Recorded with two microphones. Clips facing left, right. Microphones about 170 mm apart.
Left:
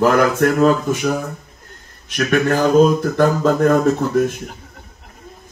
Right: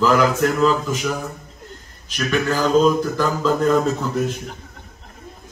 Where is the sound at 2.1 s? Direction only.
55° left (ahead or behind).